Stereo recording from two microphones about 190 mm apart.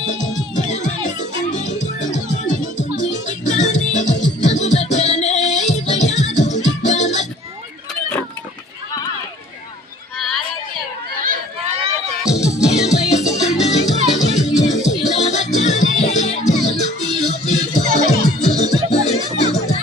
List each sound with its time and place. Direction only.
0.5 s music: 40° left (ahead or behind)
12.2 s music: 15° left (ahead or behind)
12.6 s music: 35° left (ahead or behind)